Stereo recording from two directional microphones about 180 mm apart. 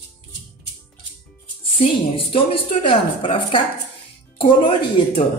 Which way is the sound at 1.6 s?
30° left (ahead or behind).